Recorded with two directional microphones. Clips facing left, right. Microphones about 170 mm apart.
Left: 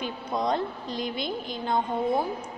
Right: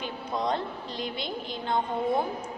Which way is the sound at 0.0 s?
15° left (ahead or behind).